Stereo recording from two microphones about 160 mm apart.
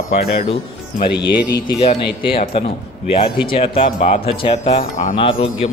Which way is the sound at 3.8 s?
45° left (ahead or behind).